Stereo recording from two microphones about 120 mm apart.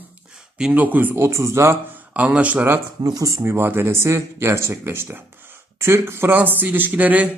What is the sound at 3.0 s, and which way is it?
Speech, 30° right (ahead or behind).